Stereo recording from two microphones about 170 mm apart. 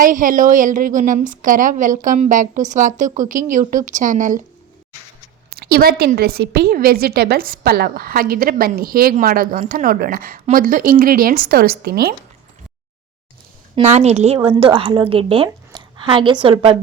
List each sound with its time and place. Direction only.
0.0 s a woman's voice: 50° right (ahead or behind)
5.5 s a woman's voice: 65° right (ahead or behind)
13.8 s a woman's voice: 40° right (ahead or behind)